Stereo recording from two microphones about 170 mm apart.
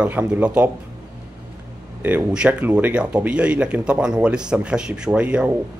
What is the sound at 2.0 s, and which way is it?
Speech, 10° right (ahead or behind).